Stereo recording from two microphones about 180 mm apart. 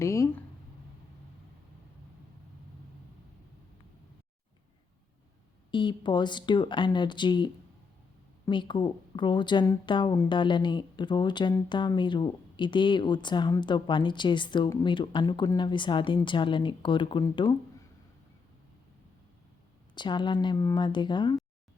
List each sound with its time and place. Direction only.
0.0 s a sound: 15° left (ahead or behind)
5.7 s speech: 25° left (ahead or behind)
20.0 s speech: 25° left (ahead or behind)